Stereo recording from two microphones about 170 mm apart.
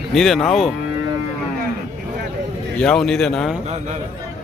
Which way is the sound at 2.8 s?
5° left (ahead or behind).